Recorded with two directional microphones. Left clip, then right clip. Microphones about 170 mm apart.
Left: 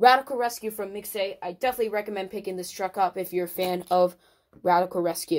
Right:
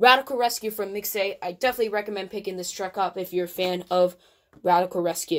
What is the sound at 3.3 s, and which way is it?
Speech, 20° left (ahead or behind).